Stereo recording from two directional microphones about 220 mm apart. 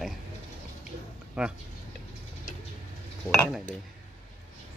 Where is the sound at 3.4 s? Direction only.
5° left (ahead or behind).